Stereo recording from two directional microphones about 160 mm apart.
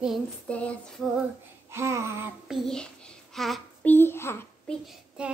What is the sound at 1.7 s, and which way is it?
Speech, 15° right (ahead or behind).